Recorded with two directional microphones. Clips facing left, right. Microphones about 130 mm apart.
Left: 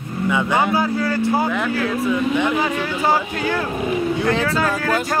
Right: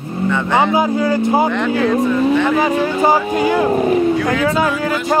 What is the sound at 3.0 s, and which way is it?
Speech, 15° right (ahead or behind).